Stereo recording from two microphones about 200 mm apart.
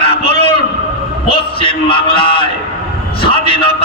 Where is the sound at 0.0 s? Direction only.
25° left (ahead or behind).